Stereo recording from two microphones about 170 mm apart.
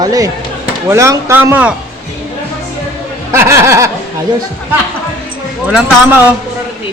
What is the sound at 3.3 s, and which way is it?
Speech, 15° right (ahead or behind).